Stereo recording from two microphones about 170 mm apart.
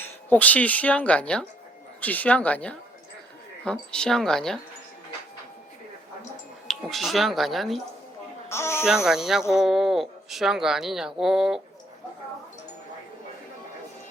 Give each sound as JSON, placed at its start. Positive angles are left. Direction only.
{"t": 0.0, "sound": "speech", "side_deg": 10}
{"t": 6.7, "sound": "speech", "side_deg": 0}
{"t": 8.4, "sound": "speech", "side_deg": 15}
{"t": 9.0, "sound": "speech", "side_deg": -5}